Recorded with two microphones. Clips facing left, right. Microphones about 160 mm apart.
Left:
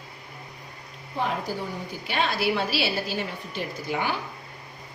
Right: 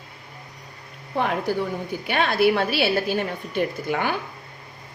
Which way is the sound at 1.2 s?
65° right (ahead or behind).